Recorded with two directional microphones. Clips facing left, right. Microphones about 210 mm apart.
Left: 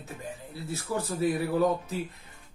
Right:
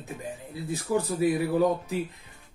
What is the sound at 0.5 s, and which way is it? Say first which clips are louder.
Speech: right 6 dB; 15° right (ahead or behind).